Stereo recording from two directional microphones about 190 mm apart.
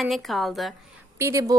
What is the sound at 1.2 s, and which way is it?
Speech, 15° right (ahead or behind).